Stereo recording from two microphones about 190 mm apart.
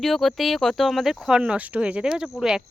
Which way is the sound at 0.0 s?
Centre (ahead or behind).